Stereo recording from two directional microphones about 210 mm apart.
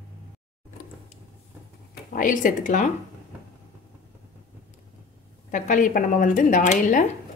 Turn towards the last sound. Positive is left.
turn(degrees=35)  # may be behind; listen again after turning